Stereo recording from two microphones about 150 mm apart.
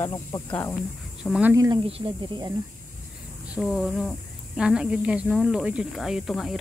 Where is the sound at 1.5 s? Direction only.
25° right (ahead or behind).